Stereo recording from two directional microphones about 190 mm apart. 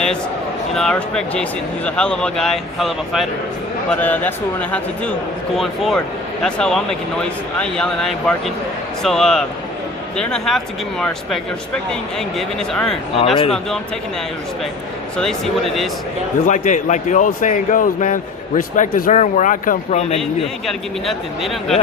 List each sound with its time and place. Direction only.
0.7 s speech: 5° left (ahead or behind)
13.3 s a man's voice: 30° left (ahead or behind)
15.2 s speech: centre (ahead or behind)
16.5 s a man's voice: 40° left (ahead or behind)
20.4 s speech: centre (ahead or behind)